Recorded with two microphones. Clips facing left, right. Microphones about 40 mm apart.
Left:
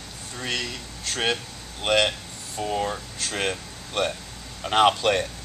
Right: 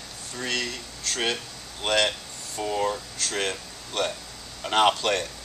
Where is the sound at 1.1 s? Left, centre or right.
Centre.